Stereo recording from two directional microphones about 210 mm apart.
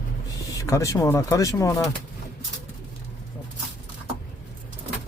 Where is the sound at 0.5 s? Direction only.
15° left (ahead or behind).